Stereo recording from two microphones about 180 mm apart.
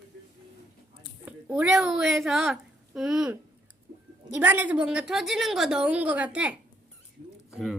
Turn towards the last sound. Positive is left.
turn(degrees=0)  # may be behind; listen again after turning